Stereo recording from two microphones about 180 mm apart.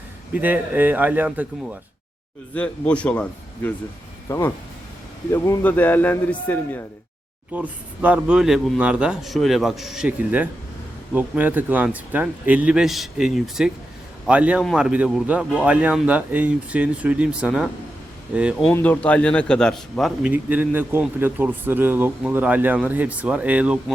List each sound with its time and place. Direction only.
0.3 s a man's voice: 10° right (ahead or behind)
2.6 s a man's voice: 5° left (ahead or behind)
7.5 s a man's voice: 10° right (ahead or behind)
18.6 s a man's voice: 10° left (ahead or behind); by 23.8 s 5° right (ahead or behind)